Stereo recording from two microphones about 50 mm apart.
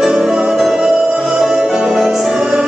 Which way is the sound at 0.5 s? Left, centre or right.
Centre.